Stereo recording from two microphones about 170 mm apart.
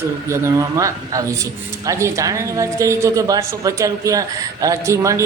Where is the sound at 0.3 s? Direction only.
20° right (ahead or behind).